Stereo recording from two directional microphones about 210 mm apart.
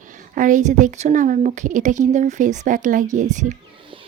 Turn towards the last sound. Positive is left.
turn(degrees=-35)  # may be behind; listen again after turning